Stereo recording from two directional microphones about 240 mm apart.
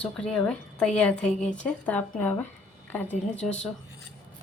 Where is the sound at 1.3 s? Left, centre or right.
Left.